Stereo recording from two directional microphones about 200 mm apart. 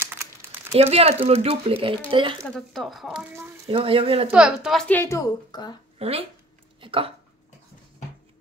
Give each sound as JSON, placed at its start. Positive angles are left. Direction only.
{"t": 0.0, "sound": "a sound", "side_deg": -10}
{"t": 0.7, "sound": "speech", "side_deg": -30}
{"t": 2.3, "sound": "speech", "side_deg": 5}
{"t": 3.7, "sound": "speech", "side_deg": -25}
{"t": 4.3, "sound": "a woman's voice", "side_deg": -5}
{"t": 5.9, "sound": "speech", "side_deg": -30}